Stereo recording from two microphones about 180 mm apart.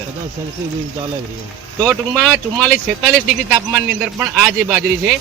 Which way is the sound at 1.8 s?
Centre (ahead or behind).